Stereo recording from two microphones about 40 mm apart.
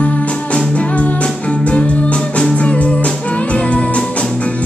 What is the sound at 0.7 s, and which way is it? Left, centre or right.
Music, left.